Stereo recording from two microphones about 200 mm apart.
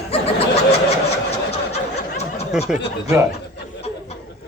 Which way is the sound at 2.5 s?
5° right (ahead or behind).